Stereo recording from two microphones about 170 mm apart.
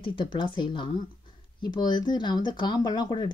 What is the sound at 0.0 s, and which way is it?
Speech, 30° left (ahead or behind).